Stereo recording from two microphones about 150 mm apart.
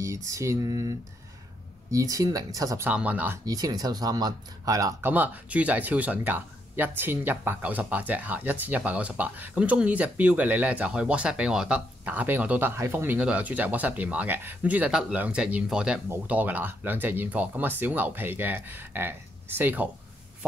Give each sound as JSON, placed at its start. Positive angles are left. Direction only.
{"t": 0.0, "sound": "speech", "side_deg": -20}
{"t": 2.9, "sound": "speech", "side_deg": -10}
{"t": 3.4, "sound": "speech", "side_deg": -25}
{"t": 5.0, "sound": "speech", "side_deg": -10}